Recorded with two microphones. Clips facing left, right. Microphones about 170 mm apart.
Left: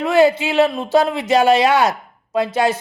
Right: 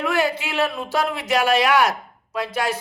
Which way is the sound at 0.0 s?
25° left (ahead or behind).